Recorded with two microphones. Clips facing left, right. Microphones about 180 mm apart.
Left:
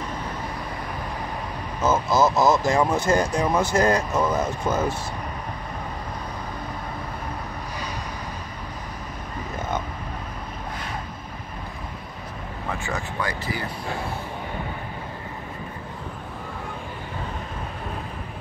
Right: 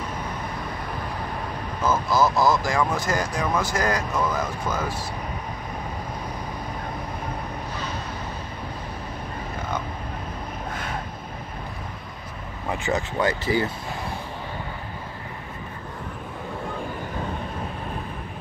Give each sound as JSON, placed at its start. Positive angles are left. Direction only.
{"t": 1.9, "sound": "speech", "side_deg": 20}
{"t": 12.7, "sound": "speech", "side_deg": -20}